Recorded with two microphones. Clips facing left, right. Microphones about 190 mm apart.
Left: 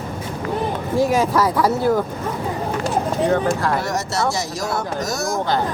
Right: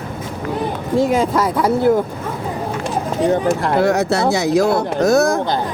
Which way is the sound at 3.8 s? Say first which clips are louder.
Right 7 dB; 60° right (ahead or behind).